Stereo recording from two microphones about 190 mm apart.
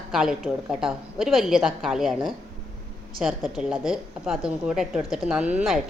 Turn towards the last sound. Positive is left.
turn(degrees=-5)  # may be behind; listen again after turning